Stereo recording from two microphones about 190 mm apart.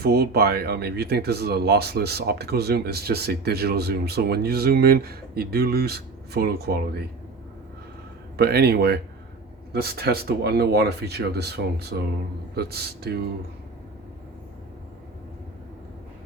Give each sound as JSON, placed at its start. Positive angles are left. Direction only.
{"t": 0.0, "sound": "speech", "side_deg": -55}
{"t": 8.4, "sound": "speech", "side_deg": -55}